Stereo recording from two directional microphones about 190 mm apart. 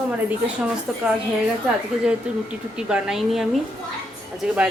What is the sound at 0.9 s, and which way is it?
Speech, centre (ahead or behind).